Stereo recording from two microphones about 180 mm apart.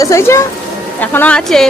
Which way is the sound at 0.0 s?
15° left (ahead or behind).